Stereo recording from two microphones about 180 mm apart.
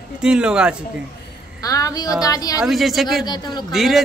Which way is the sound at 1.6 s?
20° left (ahead or behind).